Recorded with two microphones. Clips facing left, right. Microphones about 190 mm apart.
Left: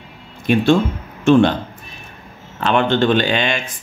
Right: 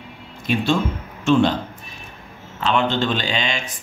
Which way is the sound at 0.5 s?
55° left (ahead or behind).